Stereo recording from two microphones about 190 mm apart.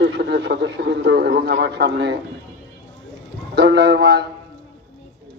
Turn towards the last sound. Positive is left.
turn(degrees=-60)  # may be behind; listen again after turning